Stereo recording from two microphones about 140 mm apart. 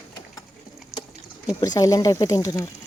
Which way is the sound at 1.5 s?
25° left (ahead or behind).